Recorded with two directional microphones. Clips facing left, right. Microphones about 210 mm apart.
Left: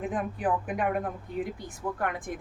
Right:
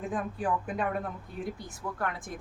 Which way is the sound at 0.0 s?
15° left (ahead or behind).